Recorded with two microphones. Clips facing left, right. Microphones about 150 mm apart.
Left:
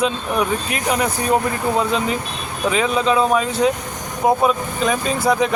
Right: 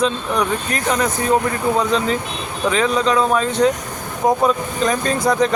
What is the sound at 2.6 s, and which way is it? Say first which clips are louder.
Speech: right 1 dB; 10° left (ahead or behind).